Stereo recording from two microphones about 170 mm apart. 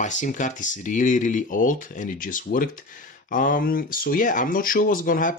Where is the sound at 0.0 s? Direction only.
45° left (ahead or behind).